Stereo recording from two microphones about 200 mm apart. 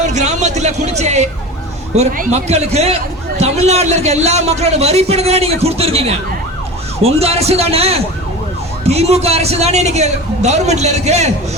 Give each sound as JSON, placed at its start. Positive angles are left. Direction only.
{"t": 0.1, "sound": "speech", "side_deg": -35}